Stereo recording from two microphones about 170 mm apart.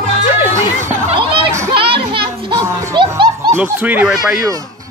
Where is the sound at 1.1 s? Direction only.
30° right (ahead or behind).